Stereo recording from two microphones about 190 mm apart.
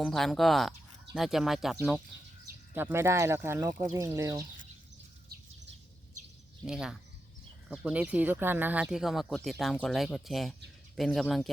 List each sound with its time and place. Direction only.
0.0 s speech: centre (ahead or behind)
2.7 s speech: 10° right (ahead or behind)
5.3 s bird: 55° right (ahead or behind)
6.7 s speech: 5° right (ahead or behind)